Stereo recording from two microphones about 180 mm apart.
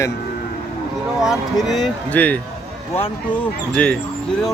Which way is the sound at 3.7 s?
5° left (ahead or behind).